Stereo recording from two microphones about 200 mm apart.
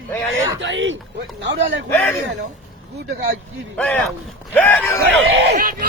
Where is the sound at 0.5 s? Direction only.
65° right (ahead or behind).